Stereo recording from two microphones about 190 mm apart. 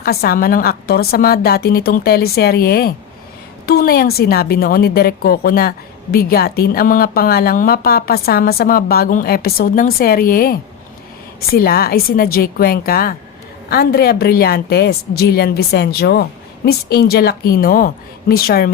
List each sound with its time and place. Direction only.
0.0 s a woman's voice: 55° left (ahead or behind)